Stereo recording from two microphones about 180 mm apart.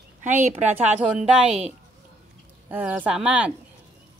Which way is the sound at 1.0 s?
5° right (ahead or behind).